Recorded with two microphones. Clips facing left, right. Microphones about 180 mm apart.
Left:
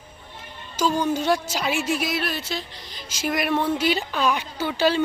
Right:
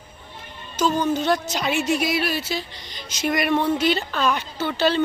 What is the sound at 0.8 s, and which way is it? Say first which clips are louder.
Speech: right 1 dB; 10° left (ahead or behind).